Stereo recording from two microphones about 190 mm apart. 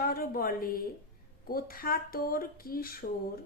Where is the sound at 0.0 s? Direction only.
50° left (ahead or behind).